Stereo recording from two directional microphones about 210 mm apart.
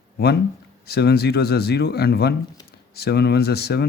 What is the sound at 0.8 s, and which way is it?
Speech, 50° left (ahead or behind).